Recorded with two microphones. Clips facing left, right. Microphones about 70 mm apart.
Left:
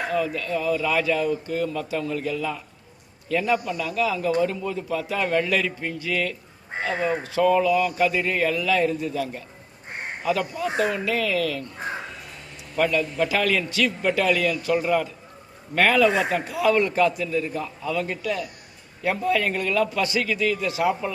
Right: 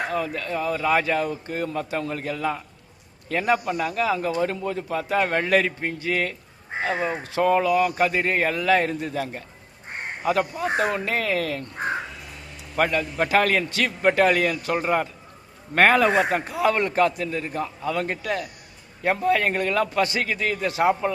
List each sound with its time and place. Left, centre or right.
0.0 s a man's voice: right
7.3 s a man's voice: right
12.7 s a man's voice: right